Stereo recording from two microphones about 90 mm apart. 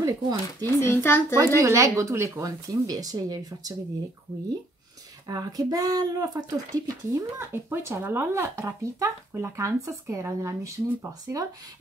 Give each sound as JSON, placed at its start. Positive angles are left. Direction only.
{"t": 0.0, "sound": "speech", "side_deg": -45}
{"t": 0.7, "sound": "speech", "side_deg": 30}
{"t": 1.6, "sound": "speech", "side_deg": -35}
{"t": 5.2, "sound": "speech", "side_deg": -45}
{"t": 7.3, "sound": "speech", "side_deg": -25}